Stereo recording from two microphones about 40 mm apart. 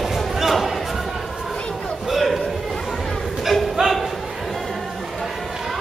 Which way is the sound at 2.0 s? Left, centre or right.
Centre.